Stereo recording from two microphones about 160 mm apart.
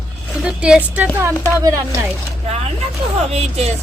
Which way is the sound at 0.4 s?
5° right (ahead or behind).